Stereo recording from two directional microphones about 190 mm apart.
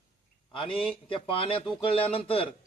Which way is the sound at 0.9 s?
25° left (ahead or behind).